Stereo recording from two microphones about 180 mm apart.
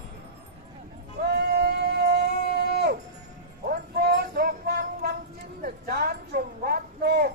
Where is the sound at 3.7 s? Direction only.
60° right (ahead or behind).